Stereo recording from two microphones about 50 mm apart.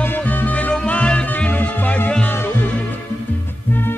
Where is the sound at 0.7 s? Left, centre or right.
Left.